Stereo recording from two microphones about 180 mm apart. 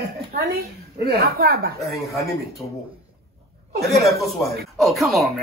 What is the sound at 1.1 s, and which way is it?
Speech, 60° right (ahead or behind).